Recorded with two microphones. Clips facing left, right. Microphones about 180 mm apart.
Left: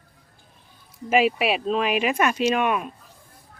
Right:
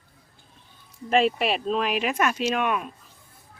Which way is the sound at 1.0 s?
5° left (ahead or behind).